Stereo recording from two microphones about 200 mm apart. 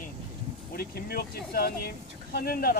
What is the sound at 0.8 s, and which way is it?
Speech, 50° left (ahead or behind).